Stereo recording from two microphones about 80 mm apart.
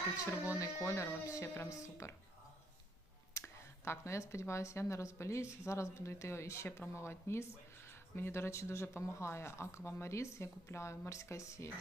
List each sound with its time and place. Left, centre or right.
0.3 s speech: left
3.4 s speech: left